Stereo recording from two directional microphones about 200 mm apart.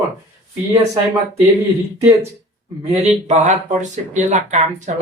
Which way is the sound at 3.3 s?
35° right (ahead or behind).